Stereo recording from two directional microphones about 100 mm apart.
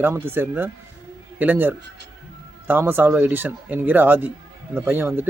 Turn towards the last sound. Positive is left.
turn(degrees=-20)  # may be behind; listen again after turning